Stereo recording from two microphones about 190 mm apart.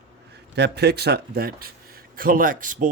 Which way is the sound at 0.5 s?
60° right (ahead or behind).